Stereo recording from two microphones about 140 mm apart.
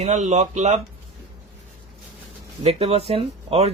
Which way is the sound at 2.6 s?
45° right (ahead or behind).